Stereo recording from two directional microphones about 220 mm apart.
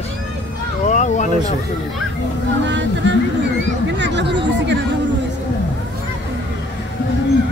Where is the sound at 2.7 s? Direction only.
55° right (ahead or behind).